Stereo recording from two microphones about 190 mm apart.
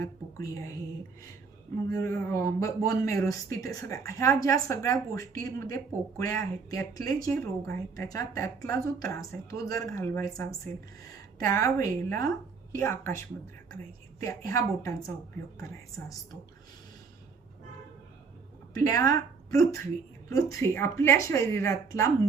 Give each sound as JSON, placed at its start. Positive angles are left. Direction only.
{"t": 0.0, "sound": "a woman's voice", "side_deg": 15}
{"t": 1.9, "sound": "a woman's voice", "side_deg": 15}
{"t": 11.4, "sound": "a woman's voice", "side_deg": 15}
{"t": 18.7, "sound": "a woman's voice", "side_deg": 15}